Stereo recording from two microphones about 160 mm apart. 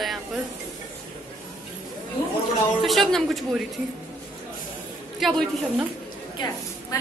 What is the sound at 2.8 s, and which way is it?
Speech, centre (ahead or behind).